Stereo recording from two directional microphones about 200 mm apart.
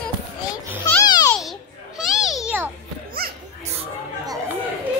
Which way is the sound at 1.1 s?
20° left (ahead or behind).